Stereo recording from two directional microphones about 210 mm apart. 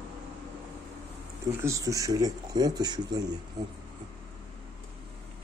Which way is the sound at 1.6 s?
15° right (ahead or behind).